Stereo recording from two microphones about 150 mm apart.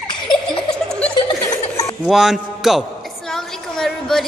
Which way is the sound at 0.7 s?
5° left (ahead or behind).